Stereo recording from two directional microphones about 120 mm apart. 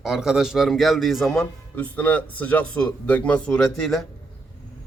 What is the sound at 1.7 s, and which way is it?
Speech, 10° left (ahead or behind).